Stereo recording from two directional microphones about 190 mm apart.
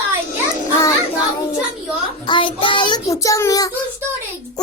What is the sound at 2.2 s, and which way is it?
Child singing, 25° left (ahead or behind).